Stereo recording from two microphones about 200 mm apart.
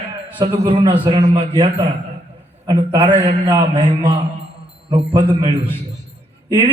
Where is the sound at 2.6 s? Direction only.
25° right (ahead or behind).